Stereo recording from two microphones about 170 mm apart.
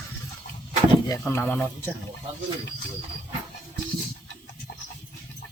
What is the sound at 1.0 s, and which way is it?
Speech, 15° left (ahead or behind).